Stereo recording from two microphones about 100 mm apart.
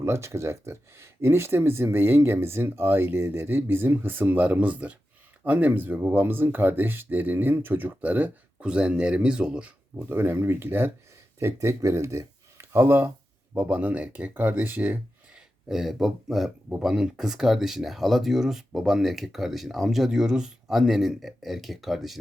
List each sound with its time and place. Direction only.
0.0 s speech: 25° right (ahead or behind); by 9.7 s 10° right (ahead or behind)
10.0 s speech: 20° right (ahead or behind)
15.7 s speech: 5° right (ahead or behind)